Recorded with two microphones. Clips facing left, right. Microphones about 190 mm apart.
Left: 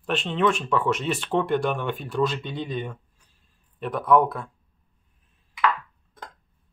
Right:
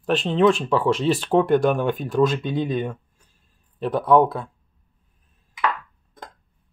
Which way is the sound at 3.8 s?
30° right (ahead or behind).